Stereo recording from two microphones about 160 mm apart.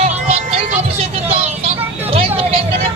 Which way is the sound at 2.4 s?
35° right (ahead or behind).